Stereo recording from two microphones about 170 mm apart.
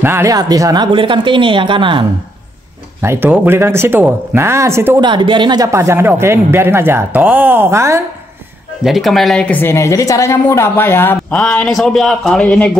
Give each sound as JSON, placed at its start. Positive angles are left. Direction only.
{"t": 0.0, "sound": "speech", "side_deg": -15}
{"t": 3.0, "sound": "speech", "side_deg": -15}
{"t": 5.1, "sound": "speech", "side_deg": -30}
{"t": 5.7, "sound": "speech", "side_deg": -15}
{"t": 8.8, "sound": "a woman's voice", "side_deg": 0}